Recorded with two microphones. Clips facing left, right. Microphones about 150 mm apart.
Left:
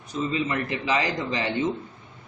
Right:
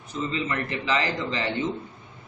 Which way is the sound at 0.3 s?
15° left (ahead or behind).